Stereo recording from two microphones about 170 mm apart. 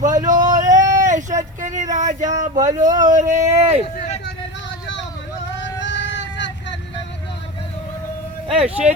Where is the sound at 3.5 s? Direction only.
40° right (ahead or behind).